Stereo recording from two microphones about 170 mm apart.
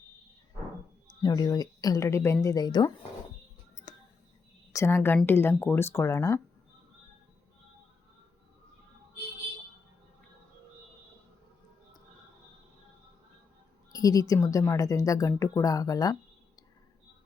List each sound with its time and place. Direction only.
1.2 s a woman's voice: 20° left (ahead or behind)
4.7 s speech: 15° left (ahead or behind)
13.9 s a woman's voice: 20° left (ahead or behind)